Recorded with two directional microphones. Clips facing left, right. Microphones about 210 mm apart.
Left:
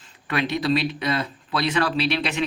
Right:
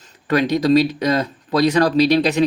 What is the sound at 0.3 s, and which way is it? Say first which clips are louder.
Speech: right 7 dB; 40° right (ahead or behind).